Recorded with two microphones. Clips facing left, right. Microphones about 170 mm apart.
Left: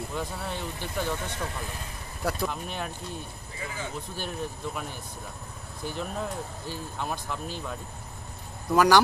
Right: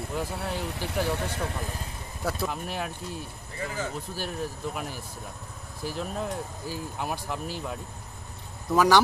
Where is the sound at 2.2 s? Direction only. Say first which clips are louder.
Even; centre (ahead or behind).